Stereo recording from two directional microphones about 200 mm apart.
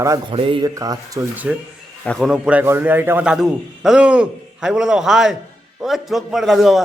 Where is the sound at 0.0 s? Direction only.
15° right (ahead or behind).